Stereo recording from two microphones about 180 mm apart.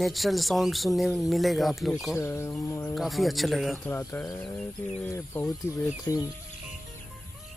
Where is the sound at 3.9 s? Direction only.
10° left (ahead or behind).